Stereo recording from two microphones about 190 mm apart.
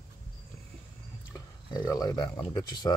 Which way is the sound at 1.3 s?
20° left (ahead or behind).